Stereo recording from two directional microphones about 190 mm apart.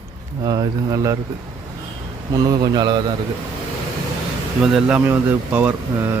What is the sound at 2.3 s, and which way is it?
Speech, 20° right (ahead or behind).